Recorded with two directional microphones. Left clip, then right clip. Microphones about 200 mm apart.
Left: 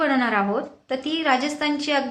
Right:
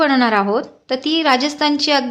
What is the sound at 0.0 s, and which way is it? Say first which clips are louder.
A woman's voice: right 6 dB; 55° right (ahead or behind).